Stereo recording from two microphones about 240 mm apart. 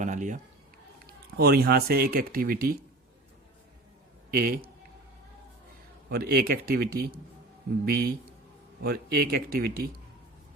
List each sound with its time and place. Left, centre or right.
0.0 s speech: right
1.4 s speech: right
4.3 s speech: right
6.1 s speech: right